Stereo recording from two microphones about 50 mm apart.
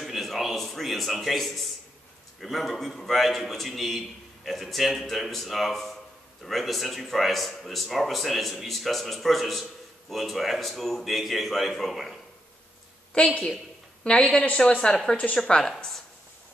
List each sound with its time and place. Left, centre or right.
0.0 s a sound: centre
2.4 s speech: centre
13.1 s a woman's voice: left; by 16.0 s centre